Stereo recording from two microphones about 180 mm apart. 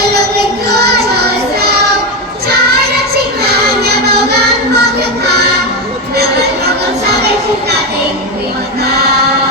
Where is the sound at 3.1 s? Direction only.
60° right (ahead or behind).